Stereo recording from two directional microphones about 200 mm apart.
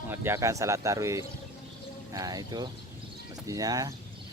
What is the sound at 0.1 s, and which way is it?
Speech, 10° right (ahead or behind).